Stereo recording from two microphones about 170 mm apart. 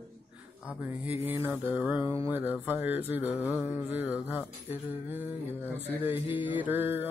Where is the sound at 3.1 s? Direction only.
10° right (ahead or behind).